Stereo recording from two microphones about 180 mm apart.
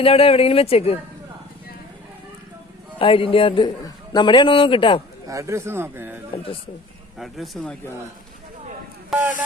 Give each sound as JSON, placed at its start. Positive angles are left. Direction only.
{"t": 0.0, "sound": "speech", "side_deg": 30}
{"t": 3.0, "sound": "a man's voice", "side_deg": 30}
{"t": 5.3, "sound": "speech", "side_deg": -15}
{"t": 6.3, "sound": "speech", "side_deg": 30}
{"t": 7.2, "sound": "speech", "side_deg": 0}